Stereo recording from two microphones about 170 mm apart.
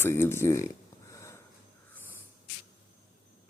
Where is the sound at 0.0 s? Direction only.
15° left (ahead or behind).